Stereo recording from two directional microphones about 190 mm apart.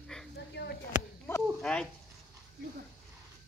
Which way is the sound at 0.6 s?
60° left (ahead or behind).